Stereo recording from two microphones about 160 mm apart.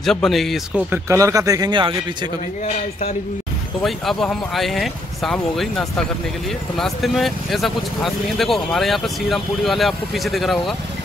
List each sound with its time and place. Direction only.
0.0 s speech: centre (ahead or behind)
0.9 s speech: 20° right (ahead or behind)
3.8 s speech: centre (ahead or behind)